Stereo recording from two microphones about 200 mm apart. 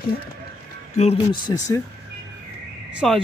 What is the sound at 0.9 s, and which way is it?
Speech, 35° left (ahead or behind).